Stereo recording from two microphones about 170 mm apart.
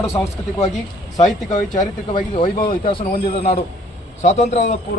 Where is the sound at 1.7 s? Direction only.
25° left (ahead or behind).